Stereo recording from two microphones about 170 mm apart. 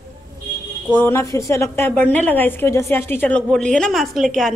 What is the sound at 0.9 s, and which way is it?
A woman's voice, 15° left (ahead or behind).